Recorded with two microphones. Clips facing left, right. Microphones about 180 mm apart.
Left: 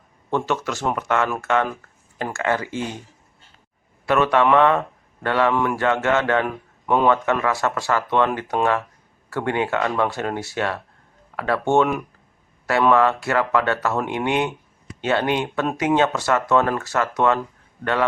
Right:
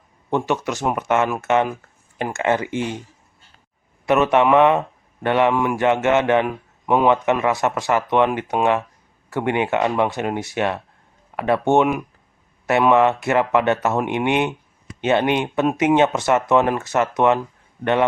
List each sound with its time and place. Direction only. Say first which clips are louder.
0.3 s a man's voice: right 2 dB; 15° right (ahead or behind)
4.0 s a man's voice: right 2 dB; 20° right (ahead or behind)